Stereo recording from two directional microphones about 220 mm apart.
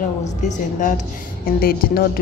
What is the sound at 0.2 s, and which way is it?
Speech, 30° left (ahead or behind).